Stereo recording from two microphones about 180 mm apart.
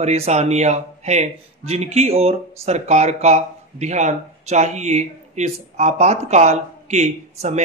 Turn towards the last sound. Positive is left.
turn(degrees=-40)  # may be behind; listen again after turning